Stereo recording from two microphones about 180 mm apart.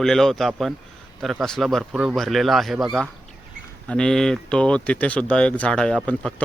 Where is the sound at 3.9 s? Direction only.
5° left (ahead or behind).